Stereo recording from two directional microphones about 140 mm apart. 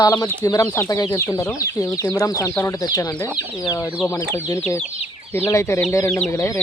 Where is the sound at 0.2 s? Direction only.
25° left (ahead or behind).